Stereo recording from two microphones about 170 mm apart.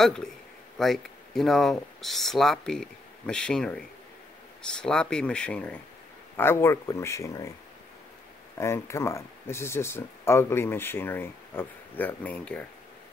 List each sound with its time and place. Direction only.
0.0 s speech: 5° left (ahead or behind)
4.8 s speech: 5° left (ahead or behind)
8.5 s speech: 15° left (ahead or behind)